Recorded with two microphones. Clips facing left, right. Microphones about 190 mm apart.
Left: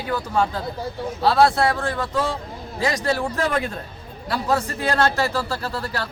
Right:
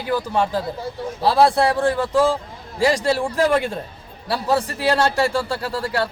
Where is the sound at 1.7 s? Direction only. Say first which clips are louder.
Right 6 dB; 30° right (ahead or behind).